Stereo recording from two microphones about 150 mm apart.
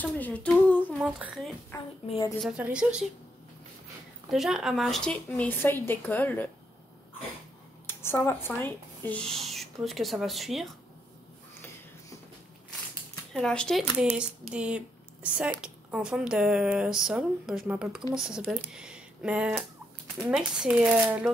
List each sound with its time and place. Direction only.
0.0 s humming: 10° left (ahead or behind)
0.9 s speech: centre (ahead or behind)
1.7 s a woman's voice: 20° left (ahead or behind)
2.4 s a child's voice: 5° right (ahead or behind)
4.3 s speech: centre (ahead or behind)
7.8 s speech: 15° left (ahead or behind)
13.3 s speech: 5° left (ahead or behind)
14.5 s a child's voice: 5° right (ahead or behind)